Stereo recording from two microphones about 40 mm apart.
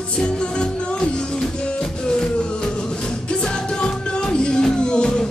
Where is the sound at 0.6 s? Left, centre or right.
Left.